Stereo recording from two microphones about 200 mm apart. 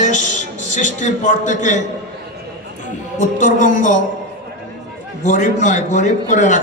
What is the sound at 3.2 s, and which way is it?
Speech, 40° left (ahead or behind).